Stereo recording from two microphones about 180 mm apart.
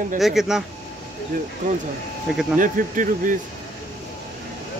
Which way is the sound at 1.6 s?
45° right (ahead or behind).